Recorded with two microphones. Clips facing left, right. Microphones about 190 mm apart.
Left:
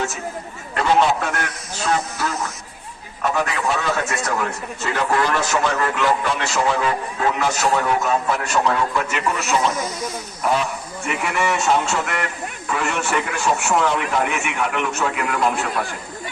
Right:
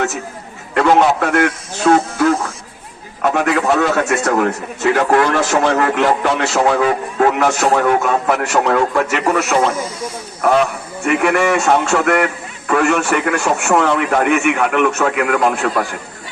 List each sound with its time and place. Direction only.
0.7 s a man's voice: 65° right (ahead or behind)